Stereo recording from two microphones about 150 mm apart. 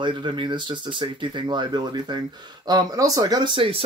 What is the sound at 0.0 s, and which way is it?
Speech, 35° right (ahead or behind).